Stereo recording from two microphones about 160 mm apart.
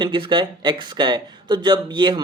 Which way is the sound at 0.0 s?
30° right (ahead or behind).